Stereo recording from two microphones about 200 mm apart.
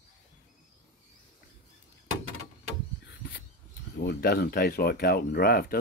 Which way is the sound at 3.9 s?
55° left (ahead or behind).